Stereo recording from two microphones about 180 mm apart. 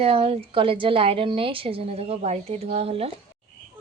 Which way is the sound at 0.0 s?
35° right (ahead or behind).